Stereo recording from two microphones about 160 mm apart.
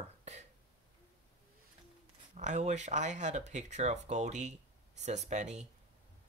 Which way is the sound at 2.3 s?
45° right (ahead or behind).